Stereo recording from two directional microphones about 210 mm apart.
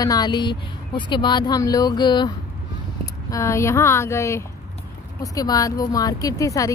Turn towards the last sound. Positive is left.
turn(degrees=15)  # may be behind; listen again after turning